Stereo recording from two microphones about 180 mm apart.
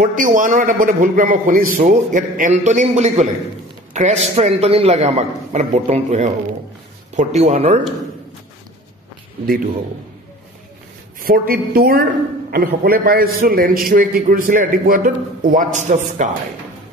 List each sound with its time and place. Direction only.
0.0 s a man's voice: 50° right (ahead or behind)
11.2 s a man's voice: 55° right (ahead or behind)